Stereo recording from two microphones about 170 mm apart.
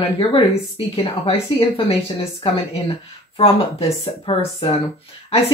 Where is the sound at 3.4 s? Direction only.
35° left (ahead or behind).